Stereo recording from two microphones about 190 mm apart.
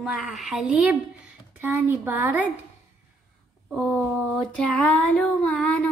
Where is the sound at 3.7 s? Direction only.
Centre (ahead or behind).